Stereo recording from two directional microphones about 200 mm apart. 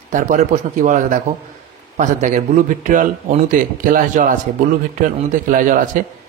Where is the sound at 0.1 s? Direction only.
40° right (ahead or behind).